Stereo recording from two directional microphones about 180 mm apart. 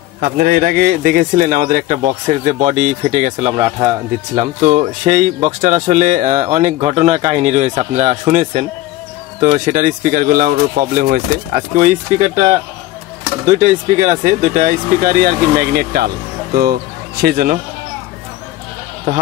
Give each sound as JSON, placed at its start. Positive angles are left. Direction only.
{"t": 0.2, "sound": "speech", "side_deg": -55}
{"t": 13.5, "sound": "speech", "side_deg": -40}
{"t": 17.2, "sound": "speech", "side_deg": -55}